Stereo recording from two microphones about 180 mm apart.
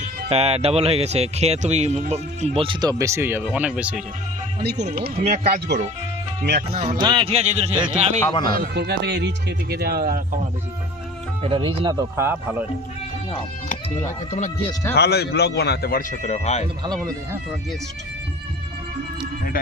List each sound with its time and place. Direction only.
0.3 s speech: 35° right (ahead or behind)
3.0 s speech: 15° right (ahead or behind)
4.6 s speech: 65° right (ahead or behind)
5.2 s speech: 40° right (ahead or behind)
5.5 s speech: 55° right (ahead or behind)
7.0 s speech: 25° right (ahead or behind)
8.3 s a man's voice: 25° left (ahead or behind)
8.5 s speech: 60° right (ahead or behind)
11.4 s speech: 30° right (ahead or behind); by 12.6 s 10° right (ahead or behind)
14.3 s speech: 40° left (ahead or behind)
14.9 s speech: 65° left (ahead or behind); by 16.6 s 35° left (ahead or behind)